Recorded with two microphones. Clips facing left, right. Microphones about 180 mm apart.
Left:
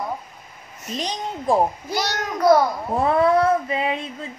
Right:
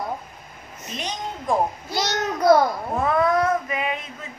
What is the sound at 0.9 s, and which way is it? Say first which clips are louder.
Speech: left 3 dB; 35° left (ahead or behind).